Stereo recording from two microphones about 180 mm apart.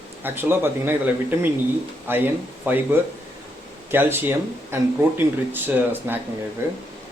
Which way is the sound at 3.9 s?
10° right (ahead or behind).